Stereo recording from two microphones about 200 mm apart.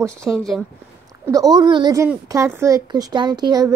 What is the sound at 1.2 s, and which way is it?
Speech, 20° right (ahead or behind).